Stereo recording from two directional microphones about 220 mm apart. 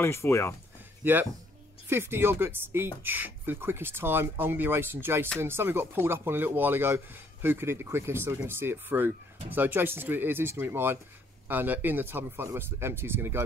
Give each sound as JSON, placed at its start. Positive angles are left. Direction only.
{"t": 0.0, "sound": "speech", "side_deg": 10}
{"t": 1.0, "sound": "speech", "side_deg": -10}